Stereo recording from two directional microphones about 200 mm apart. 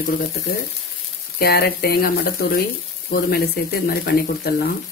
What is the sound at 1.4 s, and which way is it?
Speech, 50° left (ahead or behind).